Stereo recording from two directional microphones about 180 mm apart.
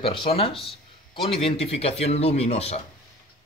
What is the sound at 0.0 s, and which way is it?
Speech, 30° left (ahead or behind).